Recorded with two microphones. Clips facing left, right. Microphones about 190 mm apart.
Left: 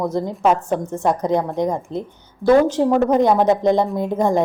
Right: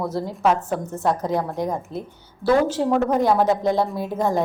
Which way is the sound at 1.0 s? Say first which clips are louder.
Left 3 dB; 20° left (ahead or behind).